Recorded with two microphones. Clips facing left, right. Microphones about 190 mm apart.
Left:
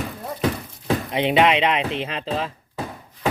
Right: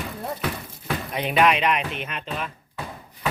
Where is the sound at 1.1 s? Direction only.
25° left (ahead or behind).